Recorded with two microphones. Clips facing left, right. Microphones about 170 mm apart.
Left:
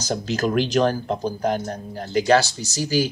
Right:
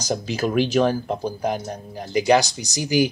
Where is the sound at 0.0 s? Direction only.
10° right (ahead or behind).